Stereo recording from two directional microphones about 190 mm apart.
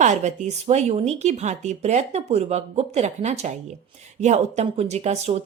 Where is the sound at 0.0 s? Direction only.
40° right (ahead or behind).